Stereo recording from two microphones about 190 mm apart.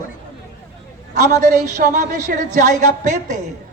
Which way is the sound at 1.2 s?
40° right (ahead or behind).